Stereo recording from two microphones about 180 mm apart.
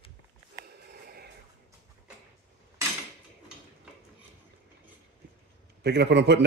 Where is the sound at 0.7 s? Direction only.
60° right (ahead or behind).